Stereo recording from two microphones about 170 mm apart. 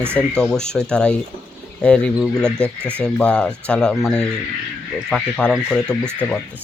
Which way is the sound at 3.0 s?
5° left (ahead or behind).